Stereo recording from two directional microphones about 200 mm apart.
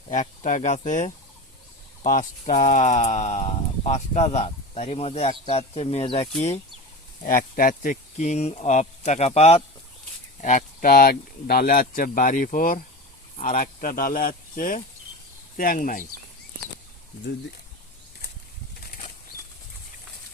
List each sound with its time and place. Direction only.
0.1 s speech: 40° left (ahead or behind)
7.2 s speech: 45° left (ahead or behind)
10.4 s speech: 40° left (ahead or behind)